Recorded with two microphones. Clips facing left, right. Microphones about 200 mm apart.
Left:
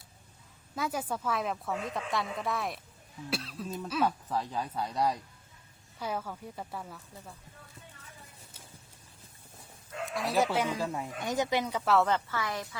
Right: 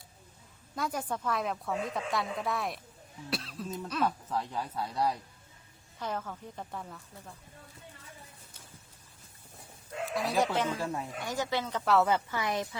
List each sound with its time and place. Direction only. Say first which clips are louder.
0.8 s a woman's voice: left 1 dB; 5° left (ahead or behind)
10.1 s speech: left 1 dB; centre (ahead or behind); by 11.8 s 15° left (ahead or behind)
11.9 s a woman's voice: right 1 dB; centre (ahead or behind)
12.1 s a woman's voice: right 2 dB; 20° right (ahead or behind)